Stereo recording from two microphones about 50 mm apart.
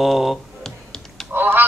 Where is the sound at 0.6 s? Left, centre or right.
Centre.